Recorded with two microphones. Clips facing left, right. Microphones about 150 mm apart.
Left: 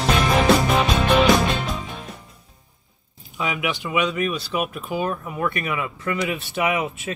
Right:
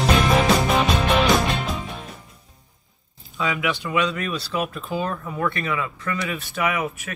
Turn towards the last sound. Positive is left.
turn(degrees=20)  # may be behind; listen again after turning